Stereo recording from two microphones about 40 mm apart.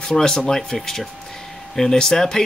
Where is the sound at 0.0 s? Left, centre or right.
Centre.